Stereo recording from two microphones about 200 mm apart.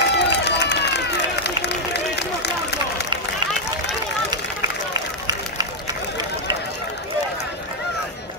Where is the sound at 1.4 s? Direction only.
55° left (ahead or behind).